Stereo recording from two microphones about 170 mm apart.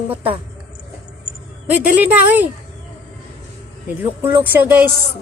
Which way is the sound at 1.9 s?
10° right (ahead or behind).